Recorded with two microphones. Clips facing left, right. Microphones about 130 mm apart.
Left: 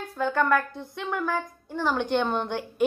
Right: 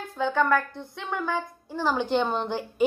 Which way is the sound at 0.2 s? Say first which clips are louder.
Even; centre (ahead or behind).